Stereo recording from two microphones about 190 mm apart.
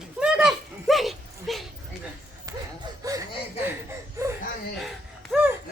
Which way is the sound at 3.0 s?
15° right (ahead or behind).